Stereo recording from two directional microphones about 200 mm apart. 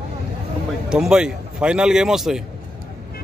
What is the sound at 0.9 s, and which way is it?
A man's voice, 5° right (ahead or behind).